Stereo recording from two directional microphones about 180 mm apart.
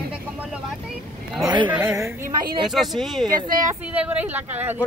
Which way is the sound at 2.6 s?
Centre (ahead or behind).